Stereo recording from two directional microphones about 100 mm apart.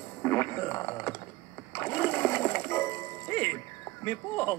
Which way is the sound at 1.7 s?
30° left (ahead or behind).